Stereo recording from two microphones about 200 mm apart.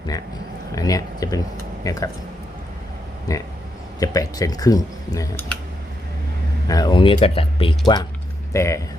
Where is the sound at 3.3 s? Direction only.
15° left (ahead or behind).